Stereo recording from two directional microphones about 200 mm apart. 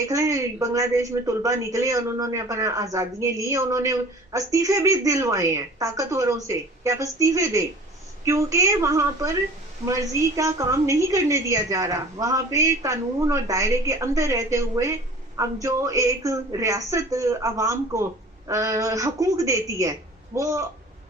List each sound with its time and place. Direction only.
0.0 s a woman's voice: 15° right (ahead or behind)